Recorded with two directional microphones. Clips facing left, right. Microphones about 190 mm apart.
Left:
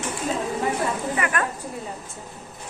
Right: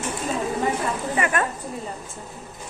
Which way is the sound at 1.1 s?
25° right (ahead or behind).